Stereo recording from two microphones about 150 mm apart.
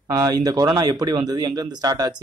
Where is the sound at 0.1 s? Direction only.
25° right (ahead or behind).